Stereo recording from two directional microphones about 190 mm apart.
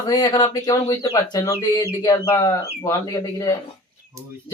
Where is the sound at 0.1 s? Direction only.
20° left (ahead or behind).